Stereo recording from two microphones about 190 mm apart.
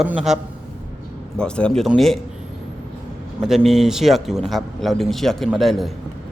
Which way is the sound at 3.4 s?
Centre (ahead or behind).